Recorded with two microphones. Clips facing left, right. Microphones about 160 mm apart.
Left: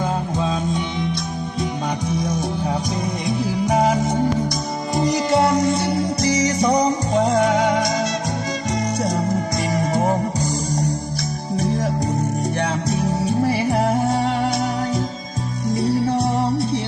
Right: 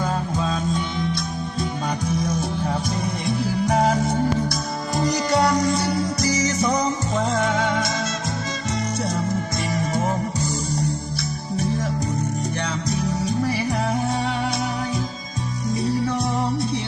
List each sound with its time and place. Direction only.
0.0 s music: 15° left (ahead or behind)
3.7 s music: 10° left (ahead or behind); by 10.2 s 40° left (ahead or behind)
12.5 s music: 35° left (ahead or behind)
15.7 s music: 30° left (ahead or behind)